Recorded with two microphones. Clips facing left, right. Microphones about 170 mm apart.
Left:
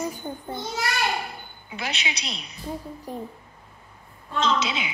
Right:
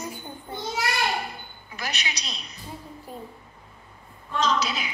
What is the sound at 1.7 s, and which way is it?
Speech, 25° left (ahead or behind).